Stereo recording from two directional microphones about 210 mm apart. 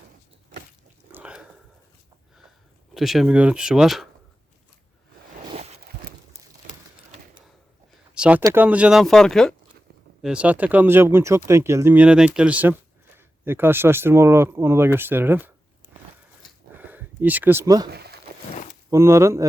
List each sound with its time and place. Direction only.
1.1 s a sound: 5° right (ahead or behind)
2.9 s speech: centre (ahead or behind)
8.1 s speech: 5° right (ahead or behind)
16.7 s a sound: 10° right (ahead or behind)
17.9 s walk: 50° right (ahead or behind)
18.9 s speech: 15° right (ahead or behind)